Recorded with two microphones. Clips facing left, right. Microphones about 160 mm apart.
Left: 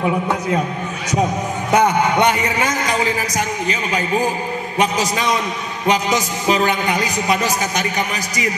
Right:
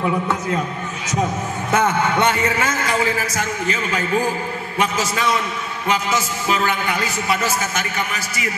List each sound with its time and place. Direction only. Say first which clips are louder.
0.0 s a man's voice: left 2 dB; 20° left (ahead or behind)
1.7 s a man's voice: left 3 dB; 15° left (ahead or behind)